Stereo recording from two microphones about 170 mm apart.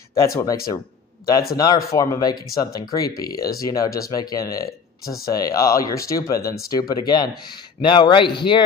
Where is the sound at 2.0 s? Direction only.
20° left (ahead or behind).